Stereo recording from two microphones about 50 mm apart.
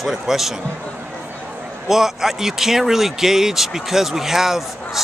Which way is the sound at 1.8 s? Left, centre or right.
Centre.